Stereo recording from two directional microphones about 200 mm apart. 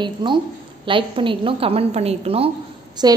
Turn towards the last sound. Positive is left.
turn(degrees=-20)  # may be behind; listen again after turning